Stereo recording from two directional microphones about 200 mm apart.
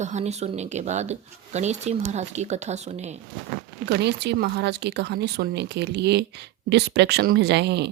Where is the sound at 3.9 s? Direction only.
55° right (ahead or behind).